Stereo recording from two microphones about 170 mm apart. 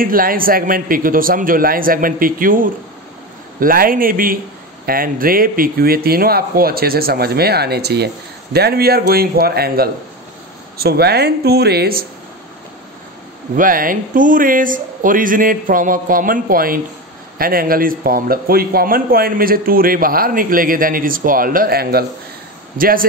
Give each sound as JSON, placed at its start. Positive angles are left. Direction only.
{"t": 0.0, "sound": "a man's voice", "side_deg": -55}
{"t": 13.6, "sound": "a man's voice", "side_deg": -55}